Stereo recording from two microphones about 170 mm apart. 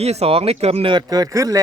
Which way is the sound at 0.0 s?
35° right (ahead or behind).